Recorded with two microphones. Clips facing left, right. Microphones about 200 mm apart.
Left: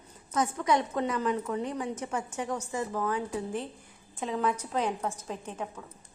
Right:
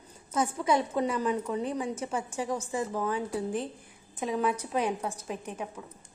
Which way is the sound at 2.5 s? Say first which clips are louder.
Right 1 dB; 10° right (ahead or behind).